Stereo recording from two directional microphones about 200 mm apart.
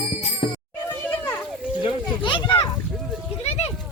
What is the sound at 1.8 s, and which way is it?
Children playing, 25° left (ahead or behind).